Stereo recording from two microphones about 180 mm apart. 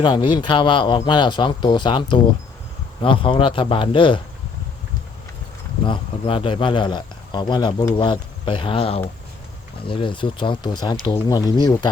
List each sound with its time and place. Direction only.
0.0 s speech: 25° left (ahead or behind)
5.8 s speech: 30° left (ahead or behind)